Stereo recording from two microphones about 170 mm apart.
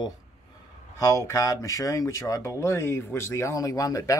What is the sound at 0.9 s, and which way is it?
Speech, 20° left (ahead or behind).